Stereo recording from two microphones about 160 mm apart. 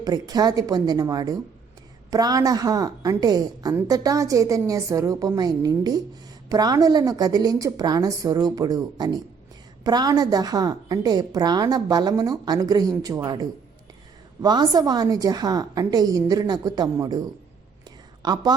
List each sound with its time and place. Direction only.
0.0 s a woman's voice: 25° right (ahead or behind)
18.2 s a woman's voice: 25° right (ahead or behind)